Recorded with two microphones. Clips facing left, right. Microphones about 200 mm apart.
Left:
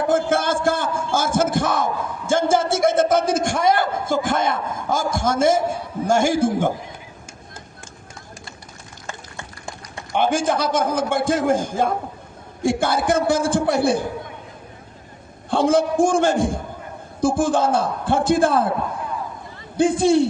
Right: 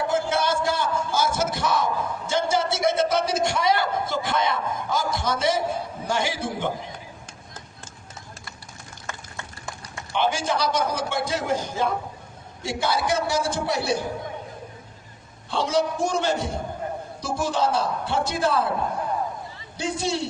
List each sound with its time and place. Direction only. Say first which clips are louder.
0.1 s a sound: left 6 dB; 50° left (ahead or behind)
6.1 s a man's voice: left 10 dB; 50° left (ahead or behind)
10.1 s a man's voice: left 5 dB; 50° left (ahead or behind)
15.4 s a man's voice: left 6 dB; 50° left (ahead or behind)
19.7 s a man's voice: left 11 dB; 50° left (ahead or behind)